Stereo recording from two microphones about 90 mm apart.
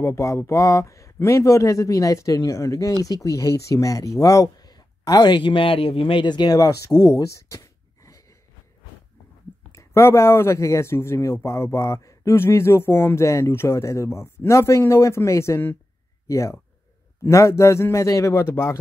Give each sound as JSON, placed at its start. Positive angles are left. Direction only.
{"t": 0.0, "sound": "speech", "side_deg": 30}
{"t": 4.2, "sound": "a sound", "side_deg": 40}
{"t": 5.4, "sound": "speech", "side_deg": 70}
{"t": 9.7, "sound": "speech", "side_deg": 30}